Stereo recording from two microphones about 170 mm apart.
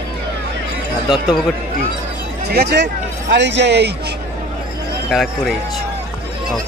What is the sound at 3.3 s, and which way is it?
Speech, 90° right.